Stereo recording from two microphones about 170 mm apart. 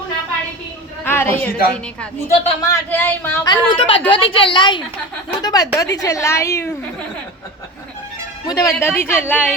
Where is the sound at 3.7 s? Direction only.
30° left (ahead or behind); by 6.7 s 15° left (ahead or behind).